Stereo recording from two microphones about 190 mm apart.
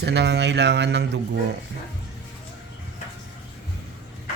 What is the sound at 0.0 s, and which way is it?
Speech, 65° right (ahead or behind).